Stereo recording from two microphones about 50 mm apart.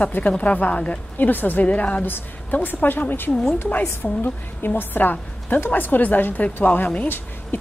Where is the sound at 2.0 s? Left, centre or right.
Left.